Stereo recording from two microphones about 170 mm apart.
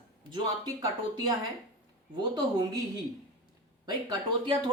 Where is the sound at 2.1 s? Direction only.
25° right (ahead or behind).